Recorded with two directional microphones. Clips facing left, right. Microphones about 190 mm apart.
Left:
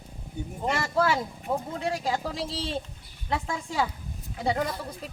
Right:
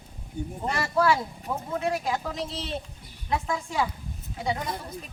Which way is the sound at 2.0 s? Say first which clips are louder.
Even; 30° left (ahead or behind).